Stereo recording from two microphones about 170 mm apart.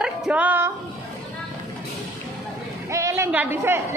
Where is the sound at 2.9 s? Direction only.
15° right (ahead or behind).